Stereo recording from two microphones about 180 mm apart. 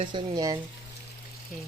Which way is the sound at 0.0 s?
25° right (ahead or behind).